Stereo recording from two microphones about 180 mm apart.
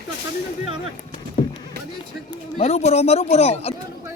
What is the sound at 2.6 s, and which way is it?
Speech, 35° left (ahead or behind).